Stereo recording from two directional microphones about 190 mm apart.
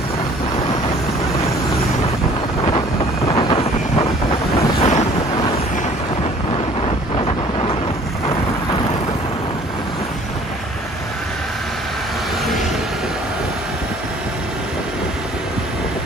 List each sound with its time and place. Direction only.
3.3 s vehicle: 30° left (ahead or behind)
4.6 s wind noise: 35° left (ahead or behind)
7.2 s vehicle: 25° left (ahead or behind)